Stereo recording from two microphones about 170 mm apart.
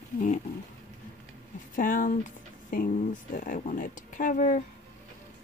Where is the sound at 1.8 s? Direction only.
50° left (ahead or behind).